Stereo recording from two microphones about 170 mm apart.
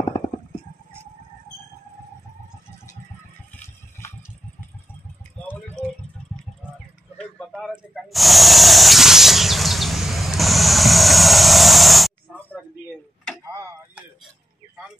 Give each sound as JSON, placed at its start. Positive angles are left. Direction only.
{"t": 7.2, "sound": "snake", "side_deg": 5}
{"t": 13.4, "sound": "tick-tock", "side_deg": -20}